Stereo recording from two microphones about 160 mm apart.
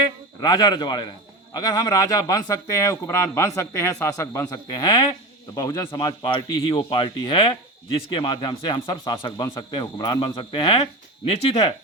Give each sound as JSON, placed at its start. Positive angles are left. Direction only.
{"t": 0.3, "sound": "a man's voice", "side_deg": 25}